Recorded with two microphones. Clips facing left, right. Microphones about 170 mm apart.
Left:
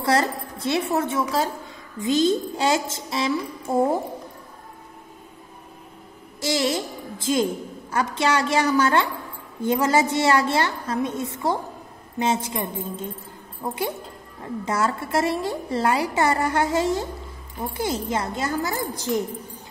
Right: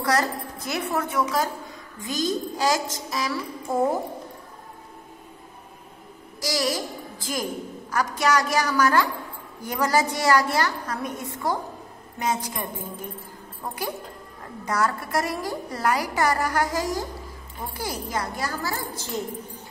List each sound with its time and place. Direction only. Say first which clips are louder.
0.0 s a woman's voice: left 2 dB; 25° left (ahead or behind)
6.4 s a child's voice: left 3 dB; 25° left (ahead or behind)